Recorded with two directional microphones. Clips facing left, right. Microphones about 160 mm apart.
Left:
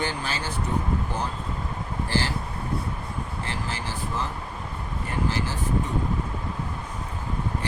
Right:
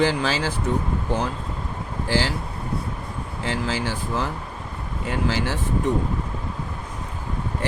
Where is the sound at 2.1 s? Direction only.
90° right.